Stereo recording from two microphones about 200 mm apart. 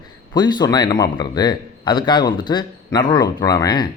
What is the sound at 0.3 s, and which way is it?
A man's voice, 20° left (ahead or behind).